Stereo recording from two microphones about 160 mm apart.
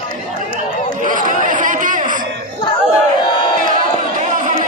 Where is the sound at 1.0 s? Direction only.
55° right (ahead or behind).